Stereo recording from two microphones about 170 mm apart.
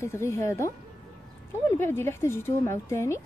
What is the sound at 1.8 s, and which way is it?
A woman's voice, 15° left (ahead or behind).